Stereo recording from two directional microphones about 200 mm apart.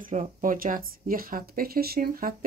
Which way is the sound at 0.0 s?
40° right (ahead or behind).